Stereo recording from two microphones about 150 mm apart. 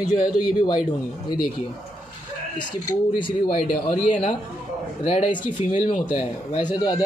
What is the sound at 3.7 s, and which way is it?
Speech, 60° left (ahead or behind).